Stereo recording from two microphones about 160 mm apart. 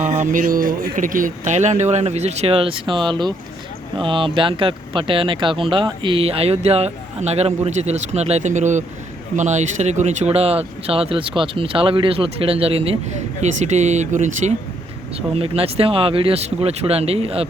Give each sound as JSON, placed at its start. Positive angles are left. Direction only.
{"t": 0.0, "sound": "speech", "side_deg": -45}
{"t": 15.4, "sound": "speech", "side_deg": -35}